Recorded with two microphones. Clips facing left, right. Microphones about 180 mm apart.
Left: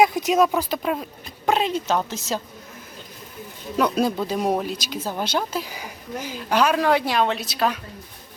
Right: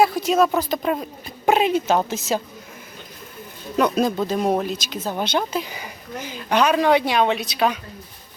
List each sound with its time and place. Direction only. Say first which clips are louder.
0.0 s speech: even; 15° left (ahead or behind)
0.6 s speech: right 2 dB; 5° left (ahead or behind)
1.5 s a woman's voice: right 4 dB; 10° right (ahead or behind)
4.0 s speech: right 2 dB; 10° left (ahead or behind)